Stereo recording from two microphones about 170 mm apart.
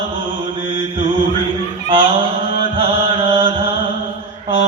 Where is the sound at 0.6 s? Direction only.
30° right (ahead or behind).